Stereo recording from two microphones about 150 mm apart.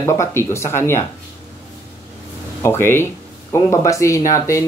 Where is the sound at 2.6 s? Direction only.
15° left (ahead or behind).